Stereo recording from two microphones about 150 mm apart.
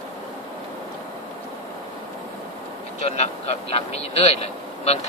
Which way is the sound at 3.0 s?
45° left (ahead or behind).